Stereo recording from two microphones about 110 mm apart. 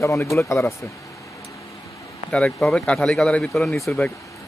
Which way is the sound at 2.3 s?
5° left (ahead or behind).